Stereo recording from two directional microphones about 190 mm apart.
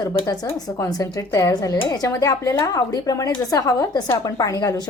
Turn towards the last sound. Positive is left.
turn(degrees=20)  # may be behind; listen again after turning